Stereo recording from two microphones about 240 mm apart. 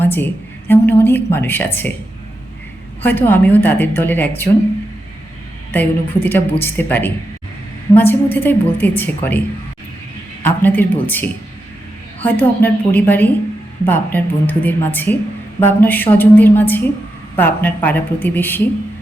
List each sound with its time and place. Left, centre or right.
0.0 s a woman's voice: centre
3.0 s a woman's voice: centre
6.2 s a woman's voice: centre
10.4 s a woman's voice: centre